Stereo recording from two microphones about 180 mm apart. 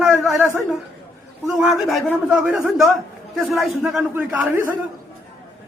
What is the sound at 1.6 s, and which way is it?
A man's voice, centre (ahead or behind).